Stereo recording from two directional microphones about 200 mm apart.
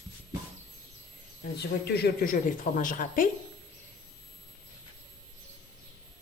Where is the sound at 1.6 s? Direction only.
55° left (ahead or behind).